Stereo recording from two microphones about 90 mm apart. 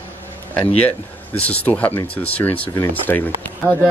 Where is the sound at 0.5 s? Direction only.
15° left (ahead or behind).